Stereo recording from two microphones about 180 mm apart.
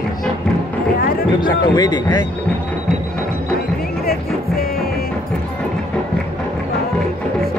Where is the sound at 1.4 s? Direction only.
25° left (ahead or behind).